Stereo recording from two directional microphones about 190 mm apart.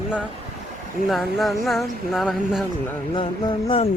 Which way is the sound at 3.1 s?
25° left (ahead or behind).